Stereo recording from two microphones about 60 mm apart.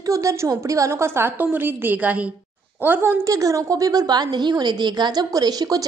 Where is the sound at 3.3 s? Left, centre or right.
Right.